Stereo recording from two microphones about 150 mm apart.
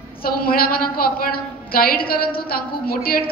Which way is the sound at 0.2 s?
80° left.